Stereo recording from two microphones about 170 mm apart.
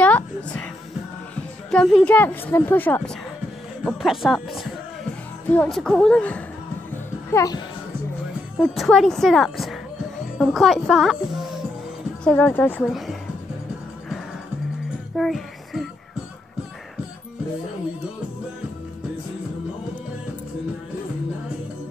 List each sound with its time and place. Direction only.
0.0 s music: 10° left (ahead or behind)
1.3 s a woman's voice: 5° left (ahead or behind)
3.8 s speech: centre (ahead or behind)
6.9 s music: 20° left (ahead or behind)
8.5 s a woman's voice: centre (ahead or behind)
12.8 s speech: centre (ahead or behind)
15.1 s music: centre (ahead or behind)